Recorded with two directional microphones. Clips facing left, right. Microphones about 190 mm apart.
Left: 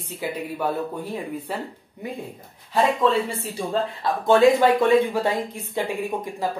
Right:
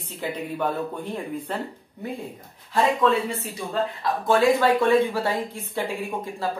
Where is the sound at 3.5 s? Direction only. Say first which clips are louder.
Left 4 dB; 25° left (ahead or behind).